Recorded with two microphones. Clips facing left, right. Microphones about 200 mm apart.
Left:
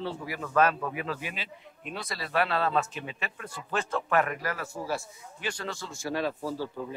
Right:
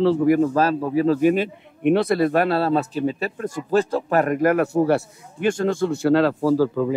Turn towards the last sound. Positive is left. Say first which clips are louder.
# right 15 dB
turn(degrees=-90)